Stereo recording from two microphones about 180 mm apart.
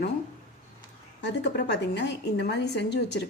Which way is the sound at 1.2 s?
70° left (ahead or behind).